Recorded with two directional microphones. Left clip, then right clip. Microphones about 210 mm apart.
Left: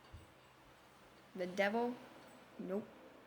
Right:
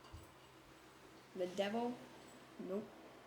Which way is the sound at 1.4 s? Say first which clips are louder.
Left 4 dB; 20° left (ahead or behind).